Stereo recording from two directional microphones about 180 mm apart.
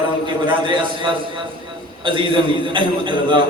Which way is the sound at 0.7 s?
25° right (ahead or behind).